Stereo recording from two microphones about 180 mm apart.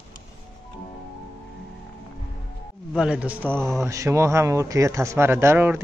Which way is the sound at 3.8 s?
15° right (ahead or behind).